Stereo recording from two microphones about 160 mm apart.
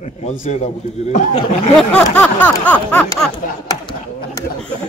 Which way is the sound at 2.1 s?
10° left (ahead or behind).